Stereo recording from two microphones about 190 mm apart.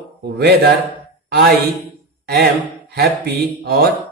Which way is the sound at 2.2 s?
55° right (ahead or behind).